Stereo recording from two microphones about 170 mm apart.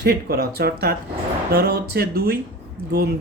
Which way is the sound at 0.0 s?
60° right (ahead or behind).